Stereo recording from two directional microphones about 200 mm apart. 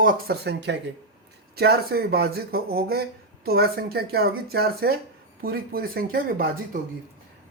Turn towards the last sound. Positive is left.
turn(degrees=-45)  # may be behind; listen again after turning